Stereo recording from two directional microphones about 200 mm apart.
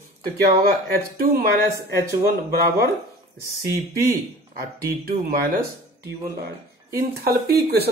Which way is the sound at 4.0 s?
45° right (ahead or behind).